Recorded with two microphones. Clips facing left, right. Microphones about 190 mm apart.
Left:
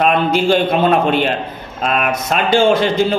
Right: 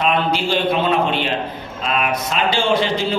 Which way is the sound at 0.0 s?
50° left (ahead or behind).